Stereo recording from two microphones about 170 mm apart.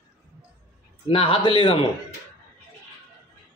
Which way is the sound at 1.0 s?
30° left (ahead or behind).